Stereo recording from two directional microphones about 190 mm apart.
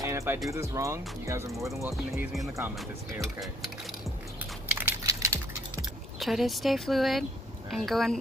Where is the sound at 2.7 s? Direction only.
Centre (ahead or behind).